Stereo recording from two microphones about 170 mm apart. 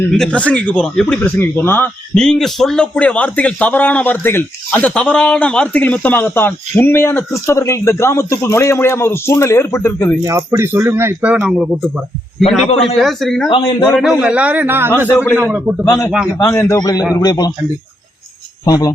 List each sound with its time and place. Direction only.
0.1 s speech: 5° left (ahead or behind)
10.2 s a man's voice: 15° right (ahead or behind)
13.0 s speech: centre (ahead or behind)
13.6 s a man's voice: 25° left (ahead or behind)
13.9 s a man's voice: 5° right (ahead or behind)
15.8 s a man's voice: 15° left (ahead or behind)
18.6 s a man's voice: 20° left (ahead or behind)